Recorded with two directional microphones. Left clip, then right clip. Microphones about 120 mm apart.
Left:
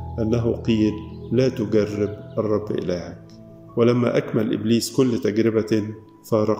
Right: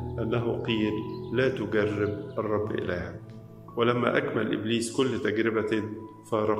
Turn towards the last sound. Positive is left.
turn(degrees=40)  # may be behind; listen again after turning